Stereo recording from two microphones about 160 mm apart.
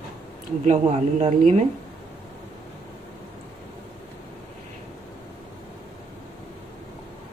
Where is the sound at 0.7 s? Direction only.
45° right (ahead or behind).